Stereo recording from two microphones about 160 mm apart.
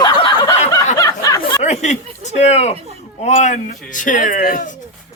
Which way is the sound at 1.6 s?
45° left (ahead or behind).